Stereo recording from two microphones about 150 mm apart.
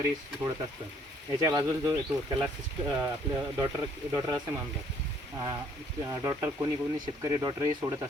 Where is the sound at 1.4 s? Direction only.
25° right (ahead or behind).